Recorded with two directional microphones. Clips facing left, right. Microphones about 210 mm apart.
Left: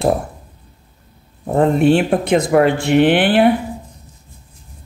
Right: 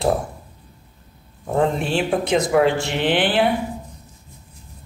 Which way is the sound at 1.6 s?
55° left (ahead or behind).